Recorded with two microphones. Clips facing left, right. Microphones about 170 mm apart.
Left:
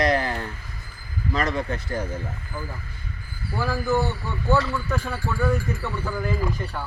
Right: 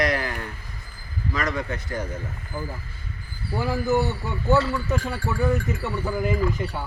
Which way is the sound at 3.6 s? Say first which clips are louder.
Right 1 dB; 20° right (ahead or behind).